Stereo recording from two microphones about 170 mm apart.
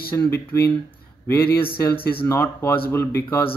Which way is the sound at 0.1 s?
10° left (ahead or behind).